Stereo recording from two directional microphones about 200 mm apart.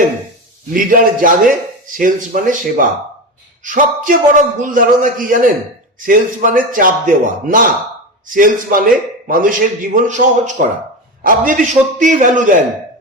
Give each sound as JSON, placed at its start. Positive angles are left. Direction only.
{"t": 0.7, "sound": "a man's voice", "side_deg": -45}